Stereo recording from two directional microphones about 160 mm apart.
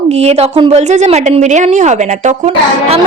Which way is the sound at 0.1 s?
40° right (ahead or behind).